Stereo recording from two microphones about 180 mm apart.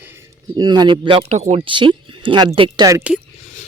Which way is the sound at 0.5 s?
25° right (ahead or behind).